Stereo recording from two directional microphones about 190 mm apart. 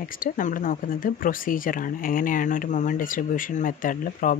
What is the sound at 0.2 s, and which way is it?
Speech, 45° left (ahead or behind).